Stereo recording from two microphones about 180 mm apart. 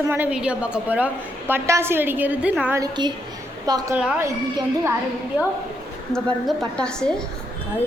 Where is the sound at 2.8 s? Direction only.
25° right (ahead or behind).